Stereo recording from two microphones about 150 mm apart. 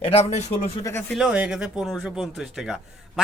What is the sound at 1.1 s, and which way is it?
Speech, 5° right (ahead or behind).